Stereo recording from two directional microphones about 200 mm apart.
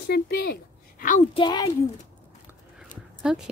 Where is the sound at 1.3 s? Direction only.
20° left (ahead or behind).